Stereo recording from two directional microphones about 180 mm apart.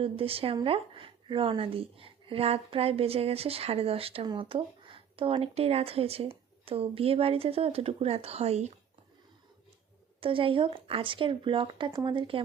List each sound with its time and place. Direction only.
0.0 s a woman's voice: 30° right (ahead or behind)
10.2 s speech: 30° right (ahead or behind)